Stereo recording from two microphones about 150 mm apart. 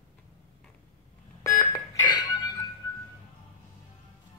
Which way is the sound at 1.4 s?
20° left (ahead or behind).